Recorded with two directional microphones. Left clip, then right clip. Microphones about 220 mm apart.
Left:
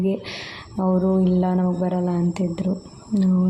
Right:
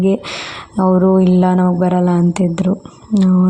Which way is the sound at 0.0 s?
20° right (ahead or behind).